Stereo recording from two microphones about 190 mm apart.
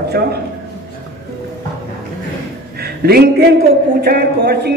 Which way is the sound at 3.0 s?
55° right (ahead or behind).